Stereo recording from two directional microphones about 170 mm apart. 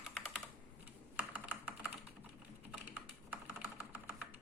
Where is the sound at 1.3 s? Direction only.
5° right (ahead or behind).